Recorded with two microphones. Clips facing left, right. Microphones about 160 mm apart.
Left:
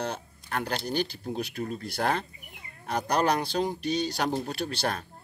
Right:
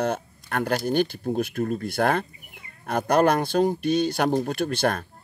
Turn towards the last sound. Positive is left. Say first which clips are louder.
# right 6 dB
turn(degrees=-50)  # may be behind; listen again after turning